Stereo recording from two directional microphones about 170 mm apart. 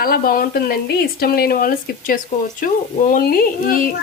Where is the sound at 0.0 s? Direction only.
60° left (ahead or behind).